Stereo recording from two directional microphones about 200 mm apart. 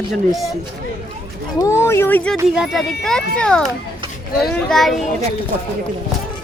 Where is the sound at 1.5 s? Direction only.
15° left (ahead or behind).